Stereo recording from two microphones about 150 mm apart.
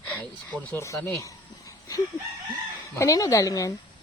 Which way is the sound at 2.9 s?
20° left (ahead or behind).